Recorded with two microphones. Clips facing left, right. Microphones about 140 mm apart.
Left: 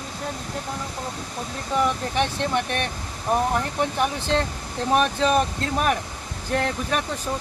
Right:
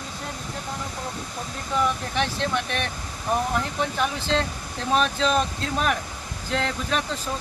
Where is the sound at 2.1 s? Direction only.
20° left (ahead or behind).